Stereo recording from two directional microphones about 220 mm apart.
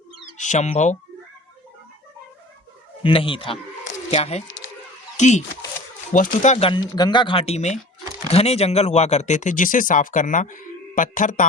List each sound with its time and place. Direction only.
0.3 s speech: 35° left (ahead or behind)
3.0 s speech: 25° left (ahead or behind)